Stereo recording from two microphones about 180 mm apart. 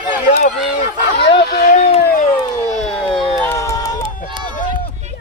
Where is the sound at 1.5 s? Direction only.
55° left (ahead or behind).